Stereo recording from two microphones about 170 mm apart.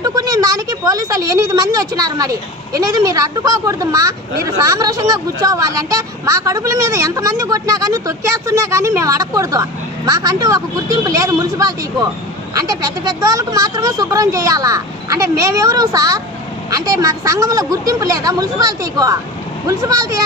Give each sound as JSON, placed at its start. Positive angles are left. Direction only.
{"t": 0.0, "sound": "a woman's voice", "side_deg": -20}